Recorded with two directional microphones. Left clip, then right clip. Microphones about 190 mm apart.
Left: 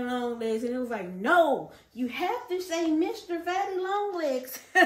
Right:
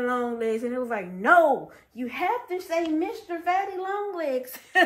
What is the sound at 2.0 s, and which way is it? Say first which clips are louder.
A woman's voice: right 3 dB; centre (ahead or behind).